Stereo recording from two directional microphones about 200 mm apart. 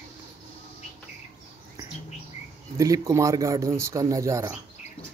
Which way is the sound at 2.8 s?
15° right (ahead or behind).